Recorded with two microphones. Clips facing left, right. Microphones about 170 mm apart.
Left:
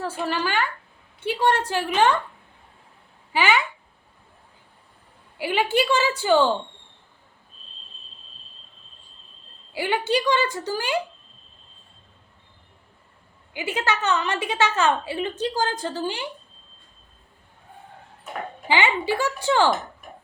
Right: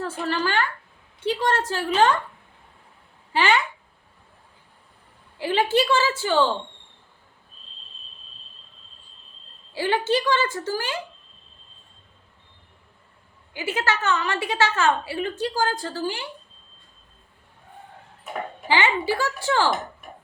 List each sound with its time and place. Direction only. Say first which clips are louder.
0.3 s a woman's voice: right 2 dB; 10° left (ahead or behind)
3.3 s a woman's voice: even; 10° left (ahead or behind)
5.4 s a woman's voice: right 1 dB; 10° left (ahead or behind)
9.7 s a woman's voice: right 1 dB; 15° left (ahead or behind)
13.5 s a woman's voice: even; 15° left (ahead or behind)
18.7 s a woman's voice: even; 15° left (ahead or behind)